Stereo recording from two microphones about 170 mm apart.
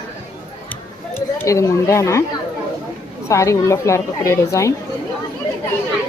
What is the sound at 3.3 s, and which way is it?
A woman's voice, 15° left (ahead or behind).